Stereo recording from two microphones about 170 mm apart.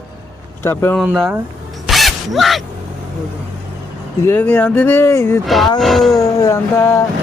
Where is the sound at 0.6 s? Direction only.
15° left (ahead or behind).